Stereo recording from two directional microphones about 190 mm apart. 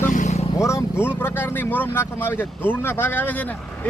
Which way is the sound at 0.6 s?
15° left (ahead or behind).